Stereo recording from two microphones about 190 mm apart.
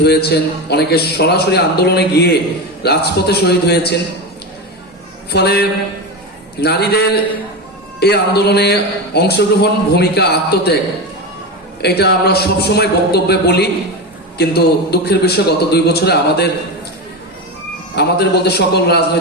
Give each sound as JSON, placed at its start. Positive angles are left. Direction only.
{"t": 0.0, "sound": "speech", "side_deg": 60}
{"t": 5.3, "sound": "speech", "side_deg": 60}
{"t": 11.8, "sound": "speech", "side_deg": 60}
{"t": 17.9, "sound": "speech", "side_deg": 60}